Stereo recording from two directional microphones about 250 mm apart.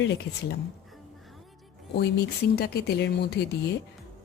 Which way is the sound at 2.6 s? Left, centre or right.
Left.